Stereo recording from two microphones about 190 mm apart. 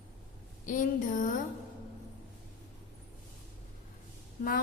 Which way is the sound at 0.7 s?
45° left (ahead or behind).